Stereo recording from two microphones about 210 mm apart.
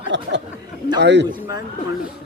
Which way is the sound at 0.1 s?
55° right (ahead or behind).